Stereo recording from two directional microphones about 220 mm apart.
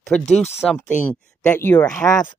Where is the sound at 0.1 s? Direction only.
5° left (ahead or behind).